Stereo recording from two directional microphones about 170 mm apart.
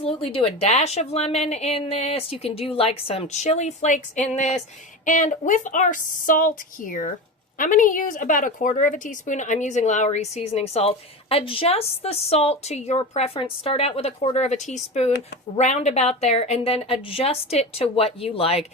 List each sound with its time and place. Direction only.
0.0 s a woman's voice: 35° left (ahead or behind)